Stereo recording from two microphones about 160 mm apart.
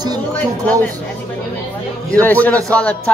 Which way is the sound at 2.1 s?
10° left (ahead or behind).